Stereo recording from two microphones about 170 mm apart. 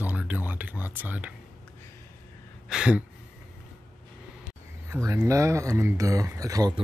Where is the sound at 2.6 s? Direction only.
5° right (ahead or behind).